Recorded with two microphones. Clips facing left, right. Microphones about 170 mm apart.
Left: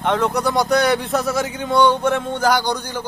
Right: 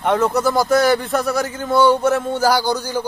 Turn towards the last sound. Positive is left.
turn(degrees=-10)  # may be behind; listen again after turning